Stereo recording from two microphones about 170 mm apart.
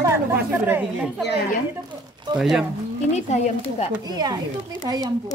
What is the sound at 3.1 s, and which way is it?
Speech, 40° left (ahead or behind).